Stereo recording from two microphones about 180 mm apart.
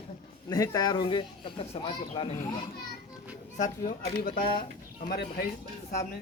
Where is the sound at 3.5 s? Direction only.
45° left (ahead or behind).